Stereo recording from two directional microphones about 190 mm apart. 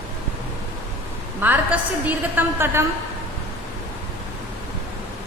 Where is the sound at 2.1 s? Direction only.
10° right (ahead or behind).